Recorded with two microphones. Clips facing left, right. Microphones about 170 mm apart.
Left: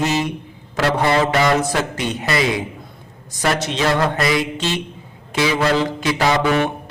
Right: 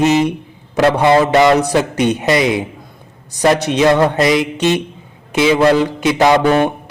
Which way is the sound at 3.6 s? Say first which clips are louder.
Right 7 dB; 15° right (ahead or behind).